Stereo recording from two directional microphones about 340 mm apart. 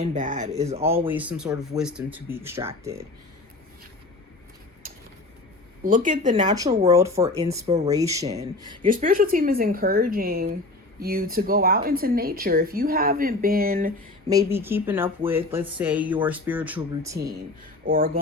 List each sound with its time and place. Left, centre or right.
0.0 s speech: right
0.8 s speech: centre
5.8 s speech: right
6.8 s speech: centre; by 13.9 s right
14.3 s speech: centre
17.8 s speech: right